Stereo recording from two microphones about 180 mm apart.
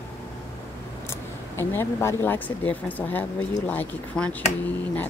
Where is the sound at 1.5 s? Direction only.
15° left (ahead or behind).